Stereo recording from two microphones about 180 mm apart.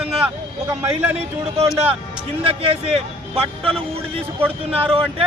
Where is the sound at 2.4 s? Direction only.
30° right (ahead or behind).